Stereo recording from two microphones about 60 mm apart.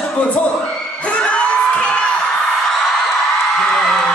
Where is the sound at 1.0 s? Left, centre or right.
Left.